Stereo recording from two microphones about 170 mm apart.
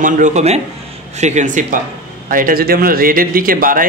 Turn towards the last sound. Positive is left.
turn(degrees=-55)  # may be behind; listen again after turning